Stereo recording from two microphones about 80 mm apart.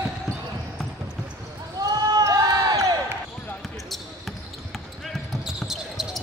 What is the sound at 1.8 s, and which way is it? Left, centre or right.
Basketball bounce, right.